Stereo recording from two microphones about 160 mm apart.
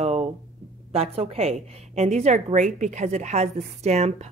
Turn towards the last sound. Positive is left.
turn(degrees=-45)  # may be behind; listen again after turning